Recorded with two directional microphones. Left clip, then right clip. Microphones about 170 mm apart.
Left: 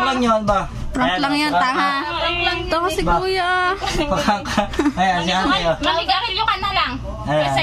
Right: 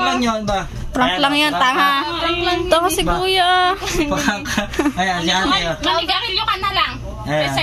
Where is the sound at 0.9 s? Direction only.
10° right (ahead or behind).